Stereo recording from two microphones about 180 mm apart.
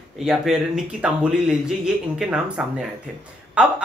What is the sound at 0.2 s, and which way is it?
Speech, 5° right (ahead or behind).